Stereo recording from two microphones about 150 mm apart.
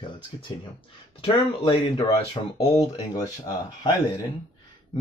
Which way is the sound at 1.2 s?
40° left (ahead or behind).